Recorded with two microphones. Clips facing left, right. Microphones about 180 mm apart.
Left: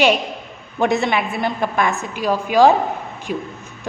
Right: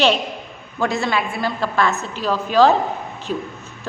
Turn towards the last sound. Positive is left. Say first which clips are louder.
# even
turn(degrees=10)  # may be behind; listen again after turning